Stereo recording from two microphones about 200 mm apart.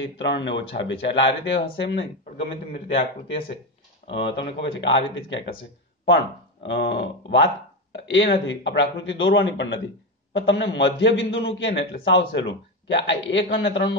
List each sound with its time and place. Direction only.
0.2 s a man's voice: 60° left (ahead or behind)
2.7 s speech: 30° left (ahead or behind)
4.4 s a man's voice: 65° left (ahead or behind)